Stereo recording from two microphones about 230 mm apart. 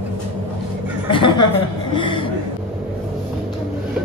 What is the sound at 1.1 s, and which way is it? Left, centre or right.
Chuckle, left.